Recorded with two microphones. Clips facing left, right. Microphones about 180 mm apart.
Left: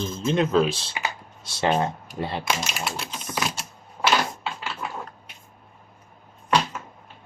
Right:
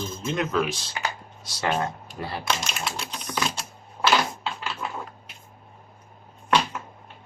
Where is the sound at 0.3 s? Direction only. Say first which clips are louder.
Left 5 dB; 30° left (ahead or behind).